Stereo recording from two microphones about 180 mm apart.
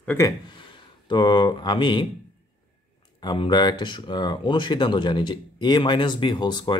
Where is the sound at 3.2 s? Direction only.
25° left (ahead or behind).